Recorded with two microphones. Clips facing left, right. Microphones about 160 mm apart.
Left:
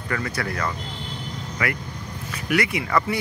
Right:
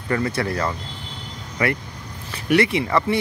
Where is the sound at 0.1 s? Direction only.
30° right (ahead or behind).